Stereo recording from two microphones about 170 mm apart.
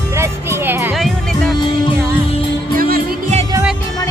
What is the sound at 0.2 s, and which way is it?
Music, 15° right (ahead or behind).